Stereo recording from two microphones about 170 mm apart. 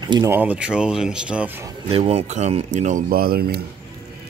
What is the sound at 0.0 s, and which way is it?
Speech, 25° right (ahead or behind).